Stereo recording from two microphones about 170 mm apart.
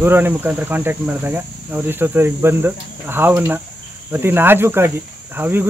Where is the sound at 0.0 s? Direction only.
10° right (ahead or behind).